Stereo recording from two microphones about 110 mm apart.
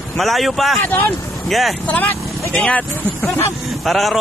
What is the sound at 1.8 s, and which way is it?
Speech, 15° left (ahead or behind).